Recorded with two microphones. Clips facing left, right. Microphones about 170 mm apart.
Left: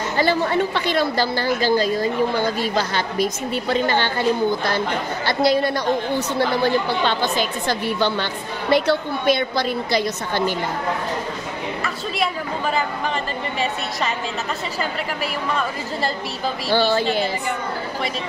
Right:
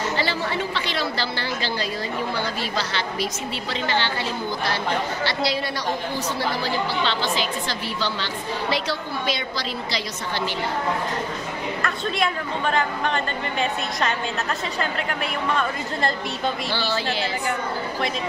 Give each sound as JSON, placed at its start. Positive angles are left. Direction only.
{"t": 0.2, "sound": "a woman's voice", "side_deg": 50}
{"t": 11.8, "sound": "a woman's voice", "side_deg": 5}
{"t": 16.7, "sound": "a woman's voice", "side_deg": 50}